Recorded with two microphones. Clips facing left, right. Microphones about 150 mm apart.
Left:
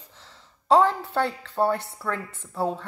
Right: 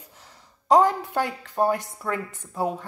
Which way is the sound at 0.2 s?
15° right (ahead or behind).